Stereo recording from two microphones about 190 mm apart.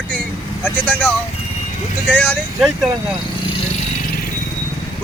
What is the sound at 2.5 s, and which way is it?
Speech, 5° right (ahead or behind).